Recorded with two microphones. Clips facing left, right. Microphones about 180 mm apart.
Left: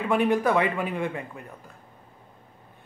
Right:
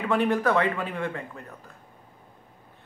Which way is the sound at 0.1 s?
15° left (ahead or behind).